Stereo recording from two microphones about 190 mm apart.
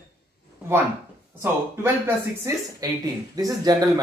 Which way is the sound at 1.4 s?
10° right (ahead or behind).